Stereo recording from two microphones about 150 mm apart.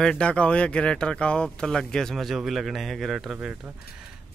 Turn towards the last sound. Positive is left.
turn(degrees=-5)  # may be behind; listen again after turning